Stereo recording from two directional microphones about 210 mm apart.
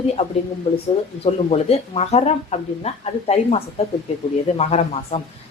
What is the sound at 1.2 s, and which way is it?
A woman's voice, 30° left (ahead or behind).